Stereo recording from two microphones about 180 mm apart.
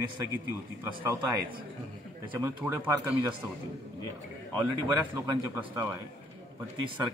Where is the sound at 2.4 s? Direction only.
15° right (ahead or behind).